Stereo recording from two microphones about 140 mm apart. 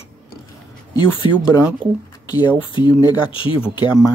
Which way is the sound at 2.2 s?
30° left (ahead or behind).